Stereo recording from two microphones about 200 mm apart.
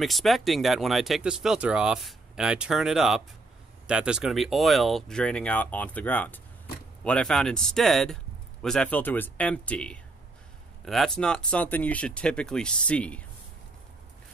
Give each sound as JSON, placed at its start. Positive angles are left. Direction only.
{"t": 0.0, "sound": "speech", "side_deg": 0}